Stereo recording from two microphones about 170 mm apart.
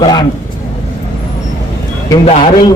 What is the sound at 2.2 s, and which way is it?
Speech, 35° left (ahead or behind).